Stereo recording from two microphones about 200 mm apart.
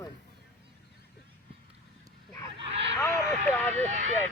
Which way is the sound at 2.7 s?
30° right (ahead or behind).